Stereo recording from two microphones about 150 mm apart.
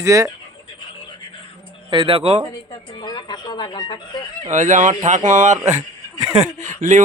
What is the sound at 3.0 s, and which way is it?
Speech, 30° left (ahead or behind).